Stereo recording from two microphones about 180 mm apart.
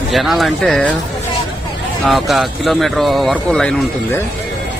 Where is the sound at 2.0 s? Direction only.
Centre (ahead or behind).